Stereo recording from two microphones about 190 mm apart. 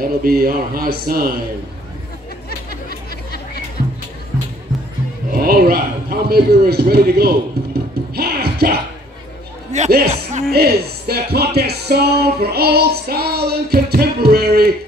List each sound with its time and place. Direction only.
0.0 s a man's voice: 50° right (ahead or behind)
2.7 s chatter: 55° left (ahead or behind)
5.3 s a man's voice: 50° right (ahead or behind)
8.1 s music: 55° right (ahead or behind)
9.7 s a sound: 35° right (ahead or behind)
10.0 s speech: 35° right (ahead or behind)
10.5 s speech: 55° right (ahead or behind)